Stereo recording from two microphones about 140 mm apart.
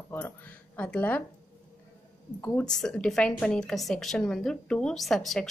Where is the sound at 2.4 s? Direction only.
10° left (ahead or behind).